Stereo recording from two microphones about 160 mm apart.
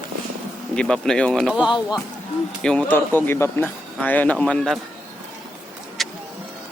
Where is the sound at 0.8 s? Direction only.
5° left (ahead or behind).